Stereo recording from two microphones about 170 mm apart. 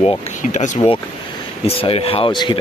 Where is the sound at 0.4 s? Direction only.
45° left (ahead or behind).